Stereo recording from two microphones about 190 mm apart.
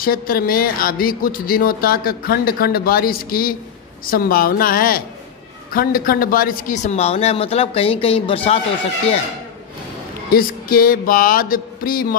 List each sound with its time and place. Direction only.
0.0 s a man's voice: 50° left (ahead or behind); by 8.4 s 30° left (ahead or behind)
10.3 s speech: 50° left (ahead or behind)